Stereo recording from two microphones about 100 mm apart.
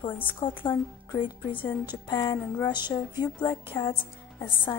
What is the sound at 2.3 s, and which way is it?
Speech, 20° left (ahead or behind).